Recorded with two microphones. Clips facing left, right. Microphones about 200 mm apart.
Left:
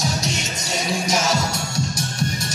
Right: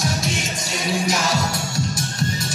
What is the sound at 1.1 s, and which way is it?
Music, 25° left (ahead or behind).